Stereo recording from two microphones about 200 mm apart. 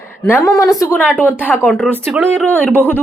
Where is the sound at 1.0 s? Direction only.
5° right (ahead or behind).